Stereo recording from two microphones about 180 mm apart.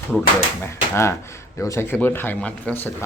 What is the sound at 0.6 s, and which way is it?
Speech, 15° left (ahead or behind).